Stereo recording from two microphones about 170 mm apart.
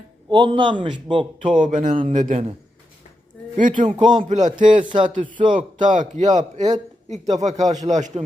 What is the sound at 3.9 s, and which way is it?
Speech, 25° right (ahead or behind).